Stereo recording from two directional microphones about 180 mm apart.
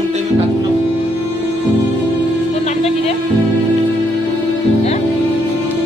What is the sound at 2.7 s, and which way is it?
Music, 35° left (ahead or behind).